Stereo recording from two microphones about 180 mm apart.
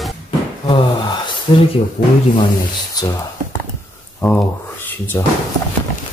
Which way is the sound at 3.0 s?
20° left (ahead or behind).